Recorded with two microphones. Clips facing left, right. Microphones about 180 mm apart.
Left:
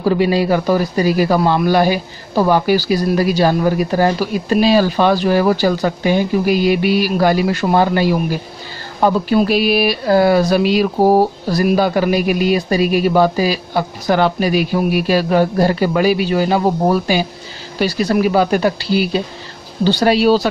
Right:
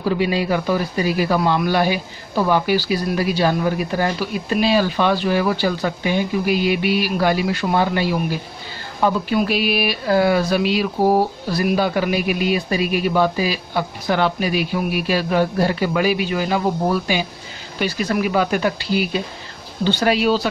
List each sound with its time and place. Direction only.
0.0 s speech: 40° left (ahead or behind)